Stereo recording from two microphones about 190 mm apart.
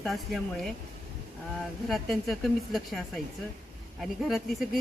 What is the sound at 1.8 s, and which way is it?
Speech, centre (ahead or behind).